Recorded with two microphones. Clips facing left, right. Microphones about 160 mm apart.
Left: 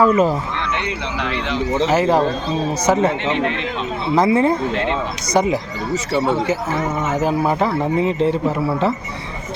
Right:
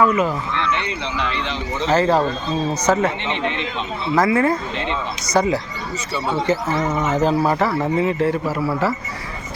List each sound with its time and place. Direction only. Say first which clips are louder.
0.0 s speech: left 3 dB; 35° left (ahead or behind)
0.7 s speech: even; 15° left (ahead or behind)
3.2 s a man's voice: left 4 dB; 5° left (ahead or behind)
4.1 s a man's voice: left 2 dB; 20° left (ahead or behind)
7.1 s a man's voice: even; 10° left (ahead or behind)